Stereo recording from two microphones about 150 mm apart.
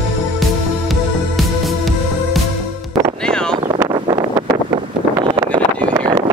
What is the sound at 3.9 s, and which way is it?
Wind noise, 30° right (ahead or behind).